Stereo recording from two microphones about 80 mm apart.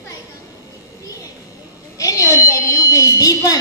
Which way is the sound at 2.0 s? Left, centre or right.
Left.